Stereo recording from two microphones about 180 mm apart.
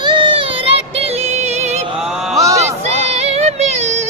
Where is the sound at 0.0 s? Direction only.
25° right (ahead or behind).